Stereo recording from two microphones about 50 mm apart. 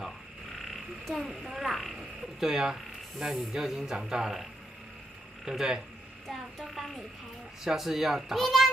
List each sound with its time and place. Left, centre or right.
0.6 s speech: centre
6.2 s a child's voice: centre